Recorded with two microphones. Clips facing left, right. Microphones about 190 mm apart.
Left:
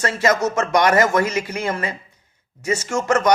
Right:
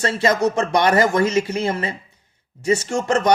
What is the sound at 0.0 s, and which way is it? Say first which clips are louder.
Speech: right 1 dB; 30° right (ahead or behind).